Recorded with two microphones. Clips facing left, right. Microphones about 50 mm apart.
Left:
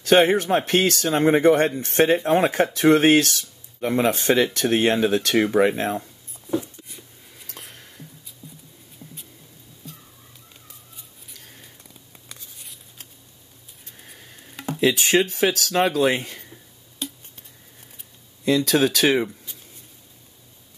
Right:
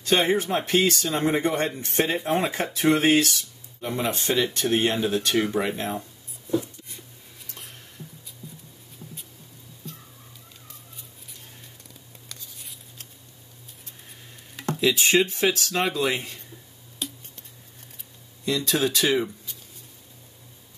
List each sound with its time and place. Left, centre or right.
0.0 s a man's voice: left
1.9 s speech: left
9.8 s a sound: centre
12.5 s a sound: centre
14.8 s a man's voice: left
16.0 s speech: left
18.9 s a man's voice: left